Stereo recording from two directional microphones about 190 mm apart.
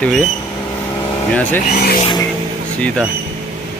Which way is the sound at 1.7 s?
50° left (ahead or behind).